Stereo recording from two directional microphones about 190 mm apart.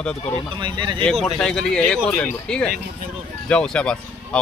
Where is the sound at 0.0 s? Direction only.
5° left (ahead or behind).